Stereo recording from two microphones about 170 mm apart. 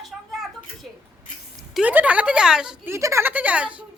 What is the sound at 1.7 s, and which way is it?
A woman's voice, 10° right (ahead or behind).